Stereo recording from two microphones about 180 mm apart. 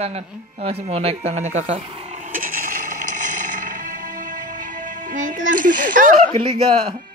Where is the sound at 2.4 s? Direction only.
50° right (ahead or behind).